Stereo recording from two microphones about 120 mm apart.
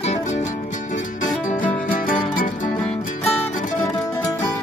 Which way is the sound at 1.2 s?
90° left.